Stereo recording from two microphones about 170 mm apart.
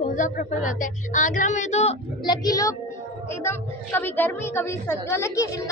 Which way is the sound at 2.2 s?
20° left (ahead or behind).